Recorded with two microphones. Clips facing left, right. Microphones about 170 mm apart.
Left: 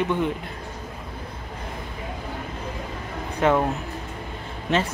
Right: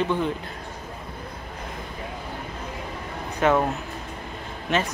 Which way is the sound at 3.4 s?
25° left (ahead or behind).